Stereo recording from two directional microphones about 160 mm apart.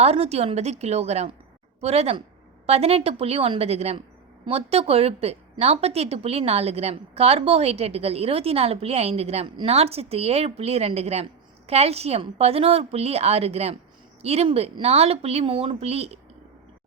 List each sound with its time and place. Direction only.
0.0 s a woman's voice: 40° right (ahead or behind)